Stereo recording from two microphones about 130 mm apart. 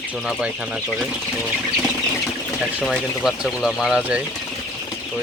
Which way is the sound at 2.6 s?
Centre (ahead or behind).